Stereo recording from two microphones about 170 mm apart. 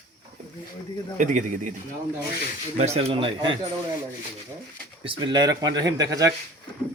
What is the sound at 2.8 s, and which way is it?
Speech, 40° right (ahead or behind).